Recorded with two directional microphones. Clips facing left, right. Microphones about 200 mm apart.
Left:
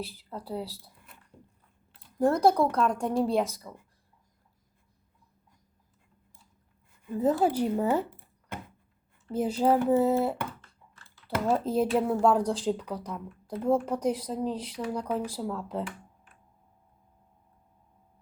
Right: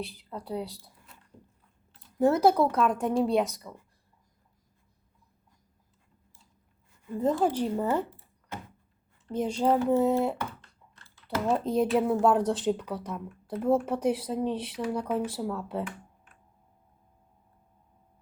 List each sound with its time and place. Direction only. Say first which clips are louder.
0.0 s speech: even; centre (ahead or behind)
1.1 s biting: even; 55° left (ahead or behind)
2.1 s speech: right 1 dB; 5° right (ahead or behind)
7.1 s speech: left 1 dB; 5° left (ahead or behind)
8.5 s a sound: even; 55° left (ahead or behind)
9.3 s speech: left 1 dB; 5° left (ahead or behind)
11.4 s speech: even; centre (ahead or behind)